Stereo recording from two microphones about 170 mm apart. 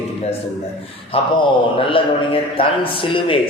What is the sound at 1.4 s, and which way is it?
A man's voice, 30° left (ahead or behind).